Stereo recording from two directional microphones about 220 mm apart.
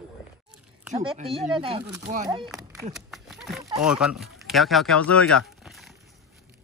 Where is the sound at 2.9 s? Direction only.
Centre (ahead or behind).